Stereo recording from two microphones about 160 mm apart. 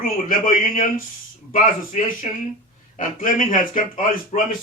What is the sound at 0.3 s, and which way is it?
Speech, 60° left (ahead or behind).